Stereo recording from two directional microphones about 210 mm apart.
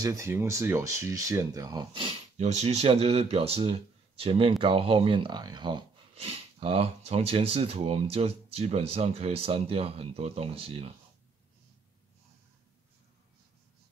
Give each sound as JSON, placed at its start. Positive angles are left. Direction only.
{"t": 0.0, "sound": "speech", "side_deg": -15}